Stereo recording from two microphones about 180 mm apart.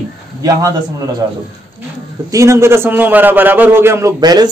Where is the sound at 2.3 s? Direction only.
15° right (ahead or behind).